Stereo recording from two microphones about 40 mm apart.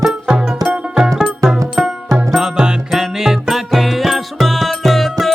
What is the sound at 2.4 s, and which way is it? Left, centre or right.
Music, centre.